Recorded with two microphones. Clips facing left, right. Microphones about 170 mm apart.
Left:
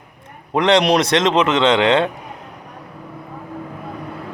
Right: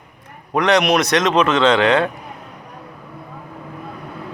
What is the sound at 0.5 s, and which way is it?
Speech, 25° left (ahead or behind).